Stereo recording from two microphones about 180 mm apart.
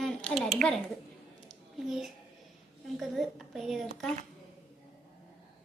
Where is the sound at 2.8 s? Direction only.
Centre (ahead or behind).